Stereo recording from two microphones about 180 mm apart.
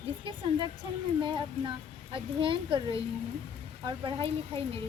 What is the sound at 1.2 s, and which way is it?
Speech, 25° right (ahead or behind).